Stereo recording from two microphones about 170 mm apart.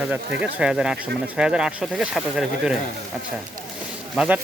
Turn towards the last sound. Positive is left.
turn(degrees=-5)  # may be behind; listen again after turning